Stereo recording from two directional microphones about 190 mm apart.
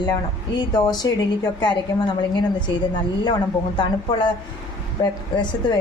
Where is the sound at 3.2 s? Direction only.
20° left (ahead or behind).